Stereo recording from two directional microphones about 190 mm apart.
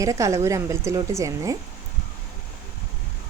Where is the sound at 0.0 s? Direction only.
15° right (ahead or behind).